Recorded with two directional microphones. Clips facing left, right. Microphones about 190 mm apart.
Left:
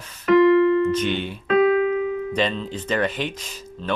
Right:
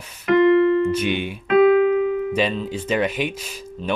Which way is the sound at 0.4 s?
30° right (ahead or behind).